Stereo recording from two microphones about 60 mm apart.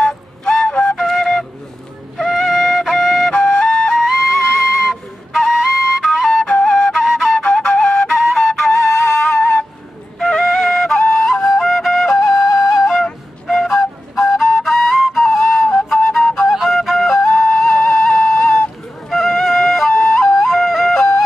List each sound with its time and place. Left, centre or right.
0.0 s flute: centre
2.1 s music: centre
3.3 s flute: centre
10.1 s flute: centre